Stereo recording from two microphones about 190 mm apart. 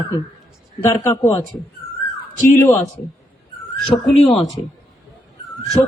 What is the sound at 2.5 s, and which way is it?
Speech, 15° left (ahead or behind).